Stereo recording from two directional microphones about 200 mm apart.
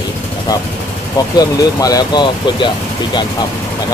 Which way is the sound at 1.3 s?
20° left (ahead or behind).